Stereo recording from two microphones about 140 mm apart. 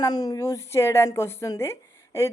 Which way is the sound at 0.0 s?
25° left (ahead or behind).